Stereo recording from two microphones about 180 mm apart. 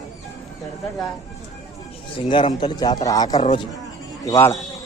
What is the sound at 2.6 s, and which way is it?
A man's voice, 25° left (ahead or behind).